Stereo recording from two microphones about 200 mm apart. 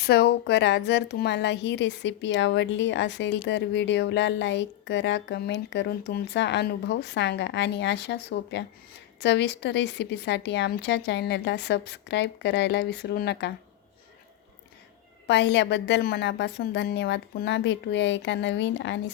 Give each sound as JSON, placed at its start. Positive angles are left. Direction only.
{"t": 0.0, "sound": "a woman's voice", "side_deg": 55}
{"t": 15.3, "sound": "a woman's voice", "side_deg": 60}